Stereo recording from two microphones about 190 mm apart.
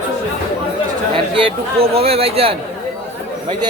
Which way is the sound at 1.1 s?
30° right (ahead or behind).